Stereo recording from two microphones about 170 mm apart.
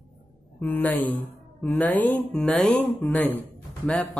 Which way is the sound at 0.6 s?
10° left (ahead or behind).